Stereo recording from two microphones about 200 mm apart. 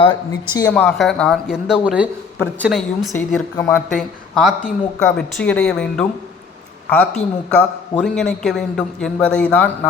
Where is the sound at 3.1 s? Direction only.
10° left (ahead or behind).